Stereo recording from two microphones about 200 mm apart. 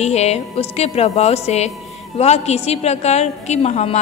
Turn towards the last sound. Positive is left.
turn(degrees=30)  # may be behind; listen again after turning